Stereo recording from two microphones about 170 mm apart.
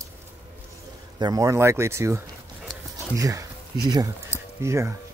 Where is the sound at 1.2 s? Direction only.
20° right (ahead or behind).